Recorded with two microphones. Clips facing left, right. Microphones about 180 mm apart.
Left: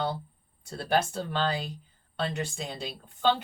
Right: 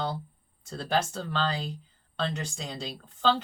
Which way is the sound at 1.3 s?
5° left (ahead or behind).